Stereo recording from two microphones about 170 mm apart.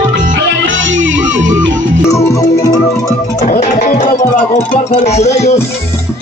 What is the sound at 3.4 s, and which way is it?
Music, 40° left (ahead or behind).